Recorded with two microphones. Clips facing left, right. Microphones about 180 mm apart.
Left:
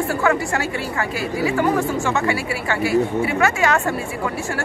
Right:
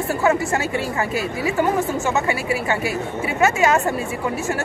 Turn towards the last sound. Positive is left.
turn(degrees=-20)  # may be behind; listen again after turning